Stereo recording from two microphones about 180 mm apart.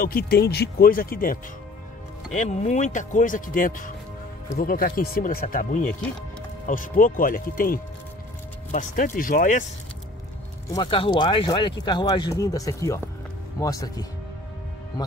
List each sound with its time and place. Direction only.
0.0 s speech: 55° left (ahead or behind)
2.3 s speech: 40° left (ahead or behind)
10.7 s speech: 25° left (ahead or behind)